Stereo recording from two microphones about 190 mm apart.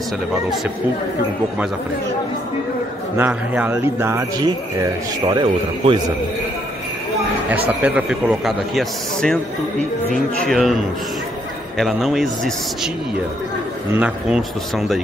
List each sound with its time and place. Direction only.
3.2 s a man's voice: 10° right (ahead or behind); by 5.9 s 25° right (ahead or behind)
7.4 s speech: 10° right (ahead or behind)
10.4 s speech: centre (ahead or behind)
11.8 s speech: centre (ahead or behind)
13.9 s speech: 5° right (ahead or behind)